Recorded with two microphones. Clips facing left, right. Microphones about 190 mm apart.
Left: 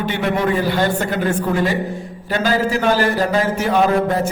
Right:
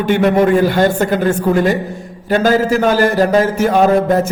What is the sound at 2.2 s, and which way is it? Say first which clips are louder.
A man's voice: right 6 dB; 45° right (ahead or behind).